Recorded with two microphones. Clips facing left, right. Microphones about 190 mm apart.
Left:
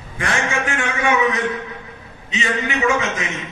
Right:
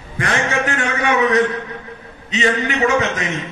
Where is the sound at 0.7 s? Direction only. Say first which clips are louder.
Right 1 dB; 35° right (ahead or behind).